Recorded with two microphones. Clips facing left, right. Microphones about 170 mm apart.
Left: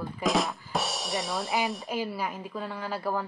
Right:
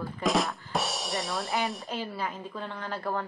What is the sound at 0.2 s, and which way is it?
A woman's voice, centre (ahead or behind).